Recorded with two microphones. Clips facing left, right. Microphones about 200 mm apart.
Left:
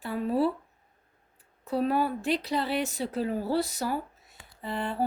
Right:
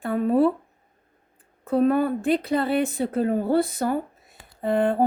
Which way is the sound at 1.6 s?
55° right (ahead or behind).